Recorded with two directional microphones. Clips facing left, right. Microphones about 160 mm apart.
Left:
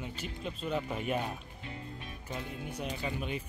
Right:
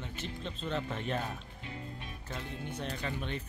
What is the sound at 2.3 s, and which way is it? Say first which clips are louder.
Speech: left 1 dB; 10° left (ahead or behind).